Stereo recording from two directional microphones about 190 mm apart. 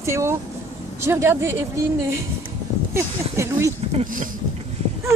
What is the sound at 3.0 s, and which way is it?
Speech, 15° right (ahead or behind).